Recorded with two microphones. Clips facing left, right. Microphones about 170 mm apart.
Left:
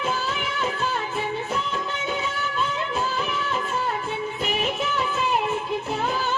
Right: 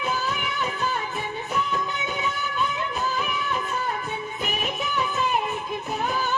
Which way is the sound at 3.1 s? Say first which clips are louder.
Left 1 dB; 15° right (ahead or behind).